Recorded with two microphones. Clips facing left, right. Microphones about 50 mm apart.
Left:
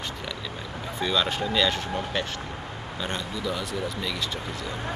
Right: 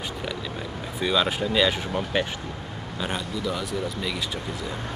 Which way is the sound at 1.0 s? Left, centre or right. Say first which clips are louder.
Right 2 dB; centre.